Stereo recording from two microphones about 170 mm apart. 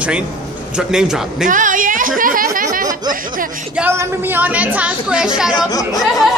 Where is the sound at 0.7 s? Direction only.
5° right (ahead or behind).